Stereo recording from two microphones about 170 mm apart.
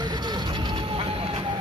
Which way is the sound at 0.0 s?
25° right (ahead or behind).